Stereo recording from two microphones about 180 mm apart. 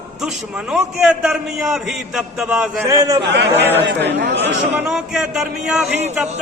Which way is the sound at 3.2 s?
70° right (ahead or behind).